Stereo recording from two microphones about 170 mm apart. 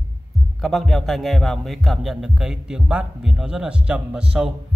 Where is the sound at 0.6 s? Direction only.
Centre (ahead or behind).